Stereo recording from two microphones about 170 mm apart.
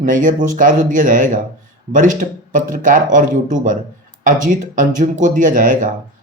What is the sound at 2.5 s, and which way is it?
Speech, 50° right (ahead or behind).